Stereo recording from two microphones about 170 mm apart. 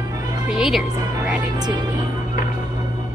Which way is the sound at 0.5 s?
5° right (ahead or behind).